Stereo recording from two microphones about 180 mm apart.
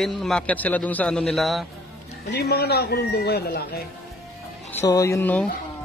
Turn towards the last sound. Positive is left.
turn(degrees=10)  # may be behind; listen again after turning